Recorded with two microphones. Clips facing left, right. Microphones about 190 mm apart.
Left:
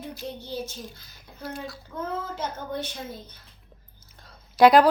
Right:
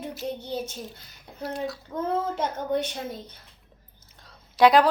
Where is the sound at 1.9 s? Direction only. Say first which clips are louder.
Right 2 dB; 35° right (ahead or behind).